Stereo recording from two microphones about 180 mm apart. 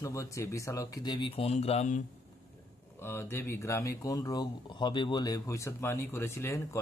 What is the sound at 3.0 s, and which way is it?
Speech, 10° left (ahead or behind).